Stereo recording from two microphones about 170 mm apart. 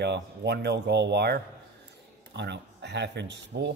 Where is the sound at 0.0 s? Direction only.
80° right.